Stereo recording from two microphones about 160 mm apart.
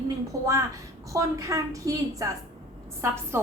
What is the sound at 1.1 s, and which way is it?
A woman's voice, 20° right (ahead or behind).